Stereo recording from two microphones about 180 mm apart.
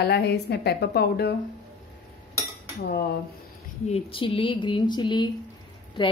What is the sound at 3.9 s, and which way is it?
A woman's voice, 35° left (ahead or behind).